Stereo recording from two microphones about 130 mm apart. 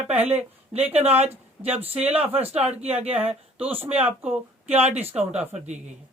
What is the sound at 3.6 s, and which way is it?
A woman's voice, 15° right (ahead or behind).